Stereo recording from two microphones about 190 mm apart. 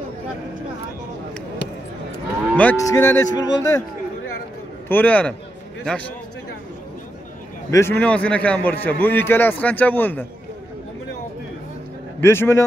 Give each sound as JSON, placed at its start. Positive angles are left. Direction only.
{"t": 2.5, "sound": "a man's voice", "side_deg": 10}
{"t": 4.8, "sound": "a man's voice", "side_deg": 10}
{"t": 7.7, "sound": "a man's voice", "side_deg": 10}
{"t": 12.2, "sound": "a man's voice", "side_deg": 15}